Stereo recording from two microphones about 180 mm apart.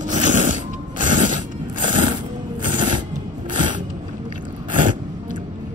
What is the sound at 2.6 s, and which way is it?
Music, 45° right (ahead or behind).